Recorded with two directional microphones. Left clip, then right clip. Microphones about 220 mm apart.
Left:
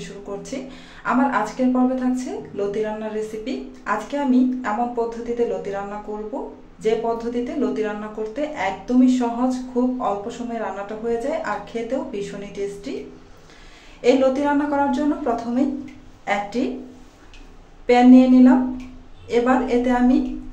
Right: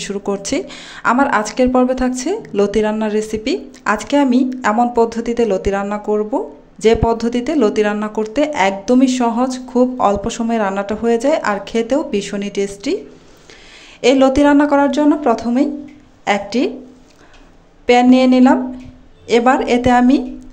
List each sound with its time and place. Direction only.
0.0 s speech: 45° right (ahead or behind)
14.0 s speech: 45° right (ahead or behind)
17.8 s speech: 40° right (ahead or behind)